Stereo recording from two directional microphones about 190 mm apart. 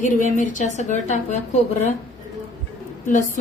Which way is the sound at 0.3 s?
40° left (ahead or behind).